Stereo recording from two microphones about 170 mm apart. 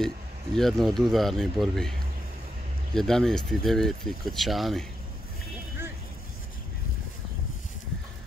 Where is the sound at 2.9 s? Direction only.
5° left (ahead or behind).